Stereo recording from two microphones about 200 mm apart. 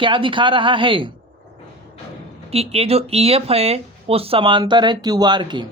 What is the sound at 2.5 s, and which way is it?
Speech, 30° right (ahead or behind).